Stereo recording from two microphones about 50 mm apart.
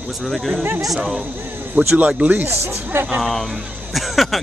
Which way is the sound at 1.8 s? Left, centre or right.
Right.